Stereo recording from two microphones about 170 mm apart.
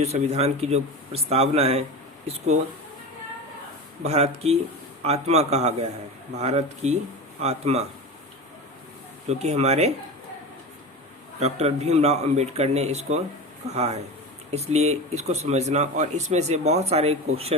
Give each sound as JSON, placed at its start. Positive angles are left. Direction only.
{"t": 0.0, "sound": "speech", "side_deg": -40}
{"t": 4.0, "sound": "speech", "side_deg": -40}
{"t": 9.3, "sound": "speech", "side_deg": -40}
{"t": 11.3, "sound": "speech", "side_deg": -40}